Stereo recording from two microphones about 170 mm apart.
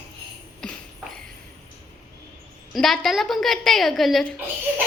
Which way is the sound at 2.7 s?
Centre (ahead or behind).